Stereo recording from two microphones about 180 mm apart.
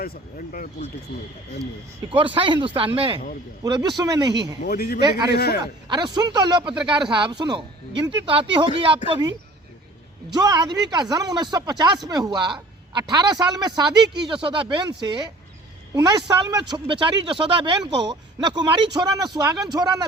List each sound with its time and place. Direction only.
0.0 s speech: 55° left (ahead or behind)
2.3 s speech: 30° right (ahead or behind)
4.6 s speech: 55° left (ahead or behind)
4.9 s speech: 25° right (ahead or behind)
10.3 s speech: 20° right (ahead or behind)